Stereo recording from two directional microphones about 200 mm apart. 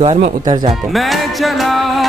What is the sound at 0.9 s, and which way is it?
Music, centre (ahead or behind).